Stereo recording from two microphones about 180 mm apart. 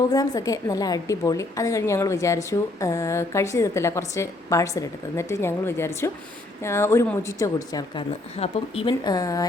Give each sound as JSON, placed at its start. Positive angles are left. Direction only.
{"t": 0.1, "sound": "a woman's voice", "side_deg": 20}